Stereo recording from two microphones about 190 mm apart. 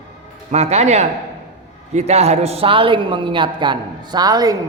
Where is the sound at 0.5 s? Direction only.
35° right (ahead or behind).